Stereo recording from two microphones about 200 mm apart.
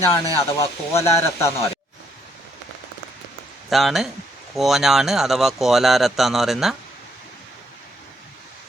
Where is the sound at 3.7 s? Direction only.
Centre (ahead or behind).